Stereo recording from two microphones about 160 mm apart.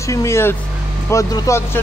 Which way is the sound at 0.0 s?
20° left (ahead or behind).